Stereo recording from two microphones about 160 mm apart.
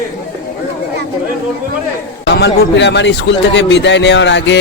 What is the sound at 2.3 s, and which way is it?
A man's voice, 90° left.